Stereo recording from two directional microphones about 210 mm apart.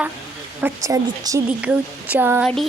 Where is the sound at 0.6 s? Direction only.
15° right (ahead or behind).